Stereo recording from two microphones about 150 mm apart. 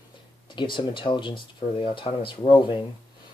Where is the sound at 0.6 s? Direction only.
30° left (ahead or behind).